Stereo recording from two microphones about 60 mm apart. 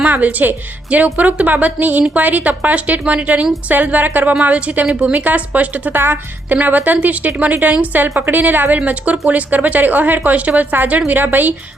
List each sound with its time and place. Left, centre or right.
0.0 s speech: right